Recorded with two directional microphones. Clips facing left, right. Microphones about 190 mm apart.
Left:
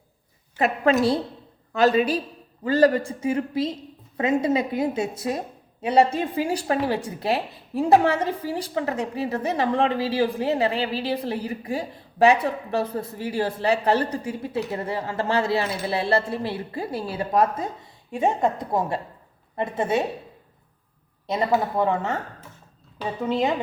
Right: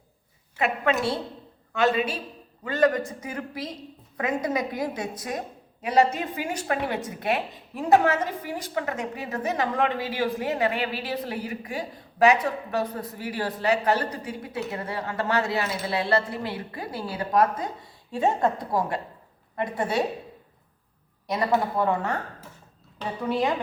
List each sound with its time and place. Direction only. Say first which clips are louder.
0.5 s a woman's voice: left 4 dB; 35° left (ahead or behind); by 20.1 s 20° left (ahead or behind)
21.2 s a woman's voice: left 2 dB; 25° left (ahead or behind)
23.2 s a woman's voice: left 2 dB; 20° left (ahead or behind)